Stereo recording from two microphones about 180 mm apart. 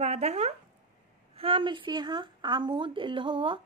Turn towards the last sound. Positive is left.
turn(degrees=-30)  # may be behind; listen again after turning